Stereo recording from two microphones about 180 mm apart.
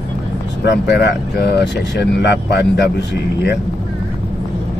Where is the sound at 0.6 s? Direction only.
70° left (ahead or behind).